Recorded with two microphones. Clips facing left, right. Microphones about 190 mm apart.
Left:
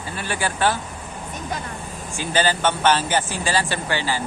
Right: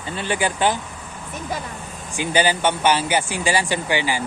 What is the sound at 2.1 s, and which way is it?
Speech, 15° right (ahead or behind).